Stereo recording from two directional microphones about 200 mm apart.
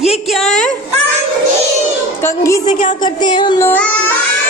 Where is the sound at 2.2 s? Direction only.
15° left (ahead or behind).